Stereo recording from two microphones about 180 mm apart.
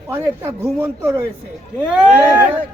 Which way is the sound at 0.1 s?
15° right (ahead or behind).